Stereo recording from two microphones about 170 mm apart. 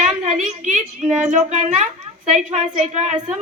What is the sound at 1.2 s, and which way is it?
A woman's voice, 45° right (ahead or behind).